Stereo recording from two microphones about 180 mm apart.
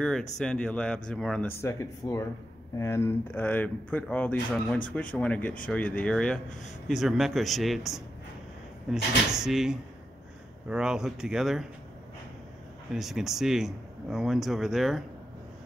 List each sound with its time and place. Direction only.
0.4 s speech: 5° left (ahead or behind)
1.6 s speech: 15° left (ahead or behind); by 11.6 s centre (ahead or behind)
12.9 s speech: centre (ahead or behind)